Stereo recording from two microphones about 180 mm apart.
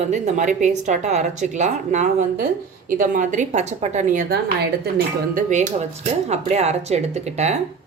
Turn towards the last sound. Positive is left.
turn(degrees=-40)  # may be behind; listen again after turning